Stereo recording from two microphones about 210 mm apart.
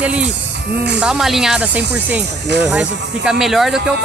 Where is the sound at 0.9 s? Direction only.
5° right (ahead or behind).